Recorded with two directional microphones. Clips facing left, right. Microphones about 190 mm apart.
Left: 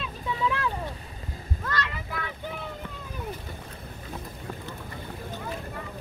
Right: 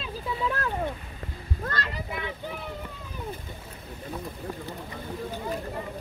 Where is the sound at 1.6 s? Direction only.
35° right (ahead or behind).